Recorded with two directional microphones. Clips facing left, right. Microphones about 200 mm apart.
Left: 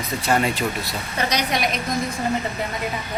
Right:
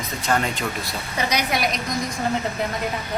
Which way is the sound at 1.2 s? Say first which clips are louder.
Even; 10° right (ahead or behind).